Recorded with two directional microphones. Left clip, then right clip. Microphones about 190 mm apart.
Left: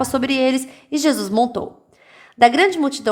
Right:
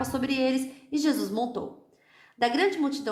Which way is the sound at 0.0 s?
50° left (ahead or behind).